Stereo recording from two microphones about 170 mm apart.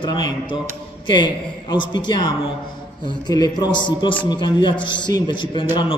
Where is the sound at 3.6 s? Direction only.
25° left (ahead or behind).